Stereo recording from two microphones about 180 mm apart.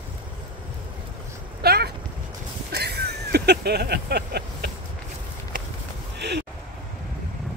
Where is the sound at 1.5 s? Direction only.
60° right (ahead or behind).